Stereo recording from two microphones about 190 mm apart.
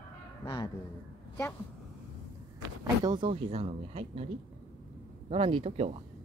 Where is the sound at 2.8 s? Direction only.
25° right (ahead or behind).